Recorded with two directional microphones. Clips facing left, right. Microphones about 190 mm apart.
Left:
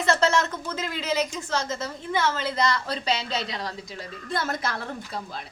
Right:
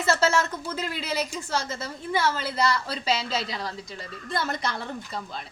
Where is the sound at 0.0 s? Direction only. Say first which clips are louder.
Left 1 dB; 5° right (ahead or behind).